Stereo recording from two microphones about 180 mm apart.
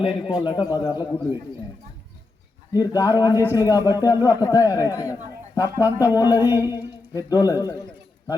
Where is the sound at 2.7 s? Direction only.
20° left (ahead or behind).